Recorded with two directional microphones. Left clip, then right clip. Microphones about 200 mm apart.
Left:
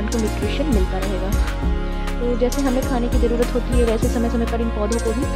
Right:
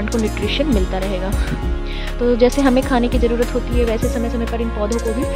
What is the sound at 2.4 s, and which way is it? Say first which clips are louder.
Speech: right 6 dB; 15° right (ahead or behind).